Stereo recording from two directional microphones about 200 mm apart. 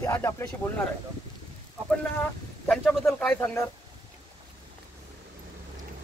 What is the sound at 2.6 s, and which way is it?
Speech, 5° left (ahead or behind).